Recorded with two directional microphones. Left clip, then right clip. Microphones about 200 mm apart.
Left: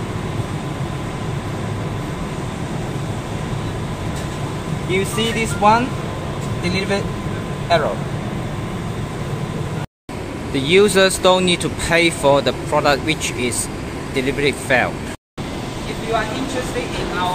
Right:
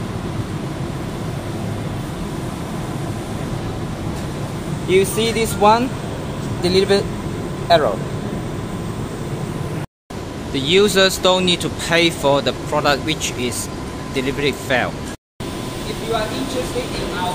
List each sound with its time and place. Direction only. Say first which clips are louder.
4.9 s speech: right 4 dB; 50° right (ahead or behind)
10.5 s speech: left 1 dB; centre (ahead or behind)